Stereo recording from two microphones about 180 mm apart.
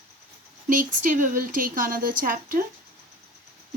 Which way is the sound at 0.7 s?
45° right (ahead or behind).